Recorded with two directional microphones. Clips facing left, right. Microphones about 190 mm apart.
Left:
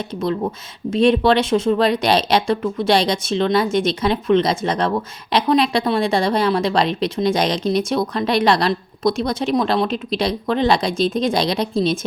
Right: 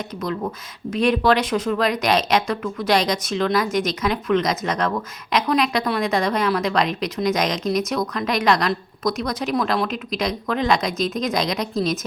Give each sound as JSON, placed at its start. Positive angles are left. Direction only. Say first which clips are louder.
{"t": 0.9, "sound": "a woman's voice", "louder": "left 3 dB", "side_deg": 25}